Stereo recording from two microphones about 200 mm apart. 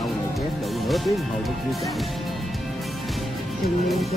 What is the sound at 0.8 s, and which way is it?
Speech, centre (ahead or behind).